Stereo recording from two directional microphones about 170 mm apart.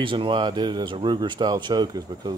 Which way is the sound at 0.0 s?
30° right (ahead or behind).